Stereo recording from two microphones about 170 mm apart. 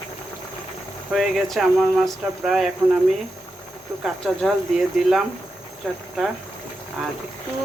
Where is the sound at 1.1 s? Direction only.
Centre (ahead or behind).